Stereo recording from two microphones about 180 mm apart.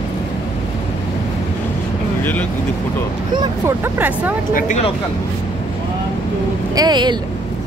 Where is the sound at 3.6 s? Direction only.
10° right (ahead or behind).